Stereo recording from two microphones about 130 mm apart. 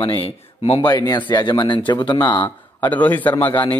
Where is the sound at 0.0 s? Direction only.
45° left (ahead or behind).